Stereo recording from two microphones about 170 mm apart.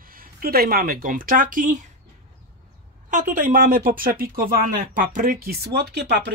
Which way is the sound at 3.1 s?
50° right (ahead or behind).